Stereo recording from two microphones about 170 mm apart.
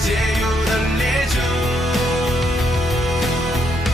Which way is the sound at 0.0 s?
Centre (ahead or behind).